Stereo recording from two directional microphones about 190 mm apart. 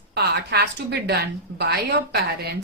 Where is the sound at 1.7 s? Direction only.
60° right (ahead or behind).